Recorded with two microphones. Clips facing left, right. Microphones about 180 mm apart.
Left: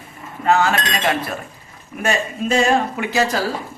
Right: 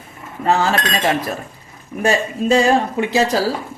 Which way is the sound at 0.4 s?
35° right (ahead or behind).